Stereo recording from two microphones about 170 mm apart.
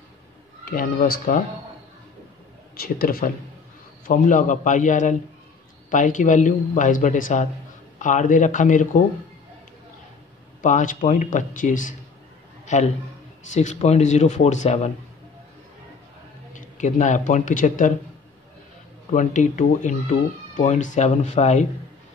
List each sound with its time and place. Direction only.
0.7 s speech: 60° left (ahead or behind)
2.7 s speech: 60° left (ahead or behind)
10.6 s a man's voice: 45° left (ahead or behind)
16.5 s a man's voice: 45° left (ahead or behind)
19.1 s speech: 45° left (ahead or behind)